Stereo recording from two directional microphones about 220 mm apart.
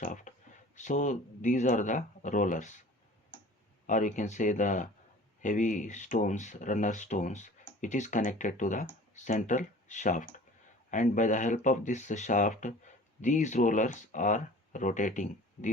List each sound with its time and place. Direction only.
0.0 s speech: 35° left (ahead or behind)
3.8 s speech: 35° left (ahead or behind)